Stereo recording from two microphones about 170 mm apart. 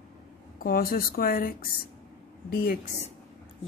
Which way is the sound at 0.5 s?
60° left (ahead or behind).